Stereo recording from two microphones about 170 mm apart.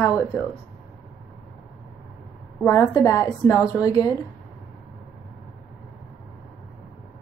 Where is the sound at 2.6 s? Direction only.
20° left (ahead or behind).